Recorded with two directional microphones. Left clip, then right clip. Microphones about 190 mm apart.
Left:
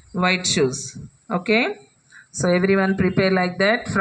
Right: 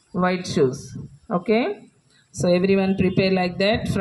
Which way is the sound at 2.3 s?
25° left (ahead or behind).